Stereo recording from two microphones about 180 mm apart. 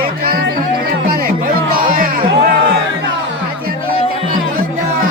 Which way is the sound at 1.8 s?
50° right (ahead or behind).